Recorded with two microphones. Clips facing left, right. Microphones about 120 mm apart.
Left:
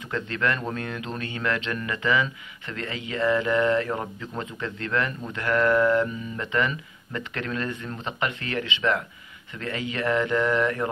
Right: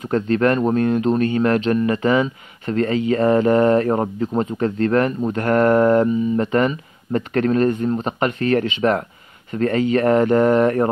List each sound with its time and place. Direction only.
0.1 s speech: 40° right (ahead or behind)